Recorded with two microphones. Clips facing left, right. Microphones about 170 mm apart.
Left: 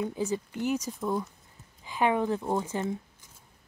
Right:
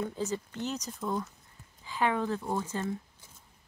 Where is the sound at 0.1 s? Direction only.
15° left (ahead or behind).